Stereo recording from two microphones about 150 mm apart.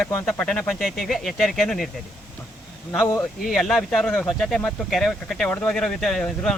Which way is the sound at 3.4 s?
Centre (ahead or behind).